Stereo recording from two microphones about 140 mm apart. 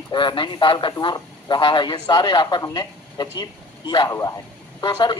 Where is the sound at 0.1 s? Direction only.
35° left (ahead or behind).